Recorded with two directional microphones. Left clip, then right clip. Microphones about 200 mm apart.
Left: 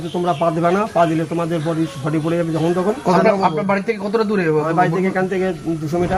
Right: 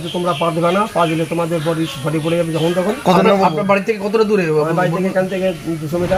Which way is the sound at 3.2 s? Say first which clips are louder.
Right 2 dB; 35° right (ahead or behind).